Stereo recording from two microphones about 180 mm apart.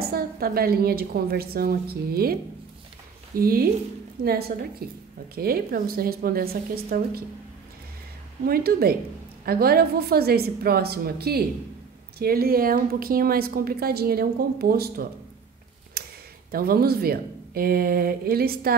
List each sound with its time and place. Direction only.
0.0 s a woman's voice: 55° right (ahead or behind)
3.3 s a woman's voice: 55° right (ahead or behind)
8.5 s a woman's voice: 55° right (ahead or behind)
16.0 s a sound: 60° right (ahead or behind)
16.5 s a woman's voice: 55° right (ahead or behind)